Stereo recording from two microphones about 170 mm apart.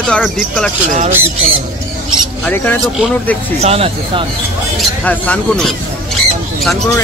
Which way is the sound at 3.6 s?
35° right (ahead or behind).